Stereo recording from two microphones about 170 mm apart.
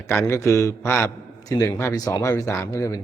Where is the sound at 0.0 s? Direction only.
15° left (ahead or behind).